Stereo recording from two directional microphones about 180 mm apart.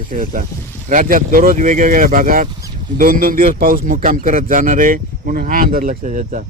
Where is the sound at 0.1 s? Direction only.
50° right (ahead or behind).